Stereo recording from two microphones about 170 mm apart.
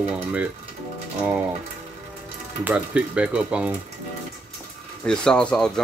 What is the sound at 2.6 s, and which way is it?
Speech, 5° right (ahead or behind).